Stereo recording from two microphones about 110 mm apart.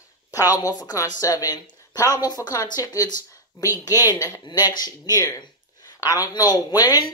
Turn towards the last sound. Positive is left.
turn(degrees=35)  # may be behind; listen again after turning